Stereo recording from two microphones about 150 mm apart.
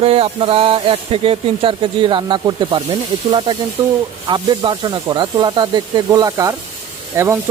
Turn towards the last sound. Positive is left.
turn(degrees=-15)  # may be behind; listen again after turning